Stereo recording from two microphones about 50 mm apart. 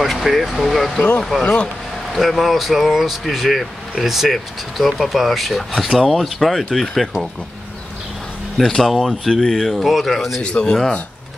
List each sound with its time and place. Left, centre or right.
0.0 s vehicle: centre
0.6 s speech: centre
1.4 s speech: left
2.1 s speech: centre
8.5 s speech: centre
10.4 s speech: centre